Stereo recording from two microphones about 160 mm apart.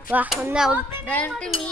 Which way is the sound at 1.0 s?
10° left (ahead or behind).